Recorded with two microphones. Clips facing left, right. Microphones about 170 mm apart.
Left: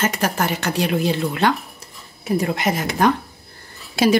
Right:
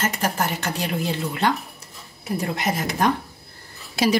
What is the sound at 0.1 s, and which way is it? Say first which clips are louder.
A woman's voice: left 3 dB; 80° left.